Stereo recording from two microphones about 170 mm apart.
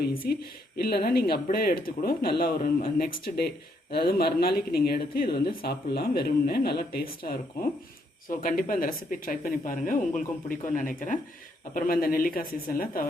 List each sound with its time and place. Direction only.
0.0 s speech: 70° left (ahead or behind)
8.3 s speech: 55° left (ahead or behind)